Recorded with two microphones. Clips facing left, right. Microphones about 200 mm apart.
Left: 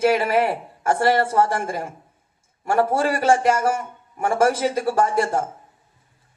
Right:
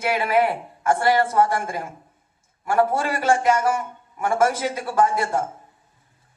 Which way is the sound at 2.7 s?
30° left (ahead or behind).